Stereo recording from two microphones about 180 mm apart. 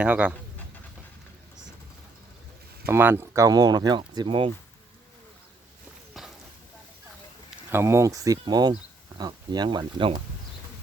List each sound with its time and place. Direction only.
0.0 s speech: 5° right (ahead or behind)
2.8 s speech: 10° right (ahead or behind); by 4.5 s 30° right (ahead or behind)
6.2 s a sound: centre (ahead or behind)
7.7 s speech: 15° right (ahead or behind)